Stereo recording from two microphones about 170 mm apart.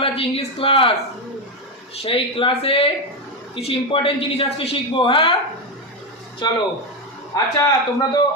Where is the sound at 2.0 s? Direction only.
35° left (ahead or behind).